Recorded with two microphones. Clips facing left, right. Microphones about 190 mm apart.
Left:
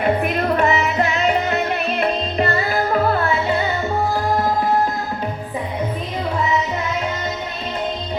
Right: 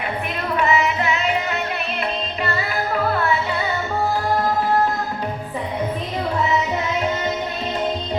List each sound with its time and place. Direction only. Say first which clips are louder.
0.0 s music: left 7 dB; 45° left (ahead or behind)